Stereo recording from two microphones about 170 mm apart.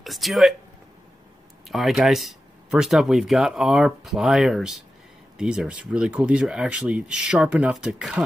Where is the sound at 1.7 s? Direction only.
Centre (ahead or behind).